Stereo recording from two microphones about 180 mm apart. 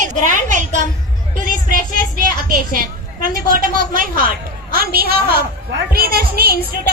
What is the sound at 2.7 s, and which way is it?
A woman's voice, 50° right (ahead or behind).